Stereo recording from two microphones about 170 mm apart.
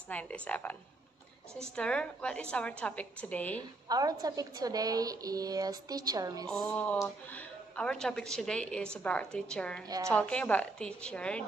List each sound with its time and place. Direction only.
0.1 s a woman's voice: 10° left (ahead or behind)
1.8 s a woman's voice: 5° left (ahead or behind)
3.9 s a woman's voice: 20° right (ahead or behind)
6.5 s a woman's voice: 5° left (ahead or behind)
9.8 s a woman's voice: 20° right (ahead or behind)
10.1 s a woman's voice: 5° left (ahead or behind)